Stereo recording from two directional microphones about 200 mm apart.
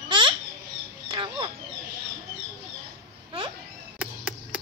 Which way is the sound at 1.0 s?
25° right (ahead or behind).